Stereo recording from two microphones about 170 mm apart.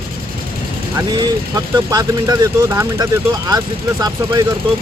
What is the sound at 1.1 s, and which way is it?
Speech, 20° right (ahead or behind).